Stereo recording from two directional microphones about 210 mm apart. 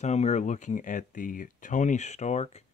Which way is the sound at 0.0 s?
30° left (ahead or behind).